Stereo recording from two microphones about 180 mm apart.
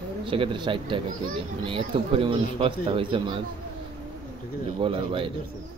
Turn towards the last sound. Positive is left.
turn(degrees=-30)  # may be behind; listen again after turning